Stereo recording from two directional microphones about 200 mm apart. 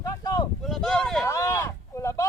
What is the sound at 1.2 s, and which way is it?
Speech, 15° left (ahead or behind).